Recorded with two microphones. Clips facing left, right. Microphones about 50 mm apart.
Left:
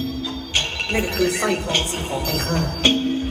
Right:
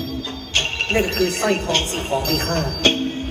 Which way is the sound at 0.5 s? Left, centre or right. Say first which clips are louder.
Right 3 dB; right.